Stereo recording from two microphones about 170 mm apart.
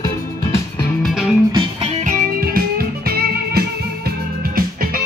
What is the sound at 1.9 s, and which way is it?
Music, 45° right (ahead or behind).